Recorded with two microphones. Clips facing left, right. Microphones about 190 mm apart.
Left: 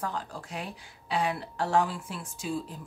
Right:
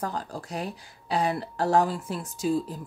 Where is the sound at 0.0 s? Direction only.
40° right (ahead or behind).